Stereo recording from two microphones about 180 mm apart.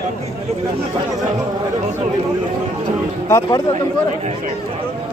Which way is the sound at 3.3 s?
20° left (ahead or behind).